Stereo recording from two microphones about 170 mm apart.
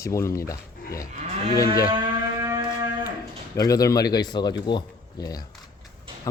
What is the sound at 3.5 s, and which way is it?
Speech, 20° left (ahead or behind).